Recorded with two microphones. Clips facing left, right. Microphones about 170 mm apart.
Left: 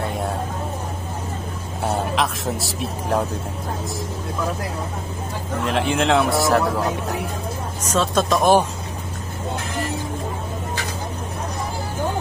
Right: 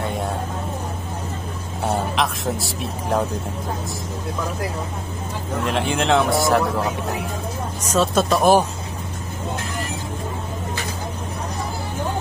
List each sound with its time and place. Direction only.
0.0 s vehicle: centre (ahead or behind)
1.9 s speech: centre (ahead or behind)
5.6 s speech: centre (ahead or behind)
7.9 s speech: 10° right (ahead or behind)